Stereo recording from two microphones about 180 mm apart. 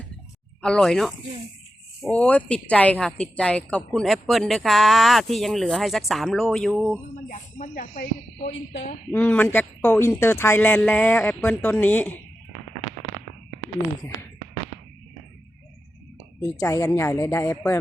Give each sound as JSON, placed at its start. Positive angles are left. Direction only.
{"t": 0.6, "sound": "a woman's voice", "side_deg": 5}
{"t": 7.3, "sound": "speech", "side_deg": 50}
{"t": 9.1, "sound": "speech", "side_deg": 10}
{"t": 16.6, "sound": "speech", "side_deg": 20}